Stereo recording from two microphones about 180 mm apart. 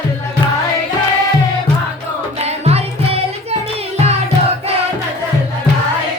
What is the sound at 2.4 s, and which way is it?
Music, 35° right (ahead or behind).